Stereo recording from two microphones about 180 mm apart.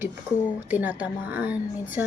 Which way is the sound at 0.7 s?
10° right (ahead or behind).